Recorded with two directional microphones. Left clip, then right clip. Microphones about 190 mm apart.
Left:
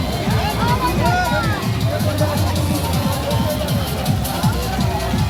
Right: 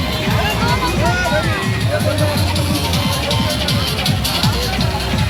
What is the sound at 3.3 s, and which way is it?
Music, 70° left (ahead or behind).